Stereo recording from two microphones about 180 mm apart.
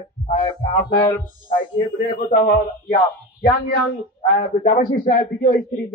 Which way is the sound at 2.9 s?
50° left (ahead or behind).